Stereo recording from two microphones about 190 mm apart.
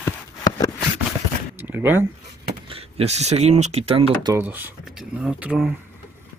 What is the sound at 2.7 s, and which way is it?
Speech, 30° right (ahead or behind).